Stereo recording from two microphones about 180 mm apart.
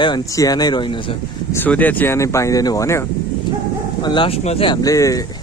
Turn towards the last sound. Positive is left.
turn(degrees=20)  # may be behind; listen again after turning